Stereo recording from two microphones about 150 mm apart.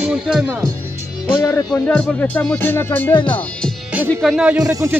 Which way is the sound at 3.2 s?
10° left (ahead or behind).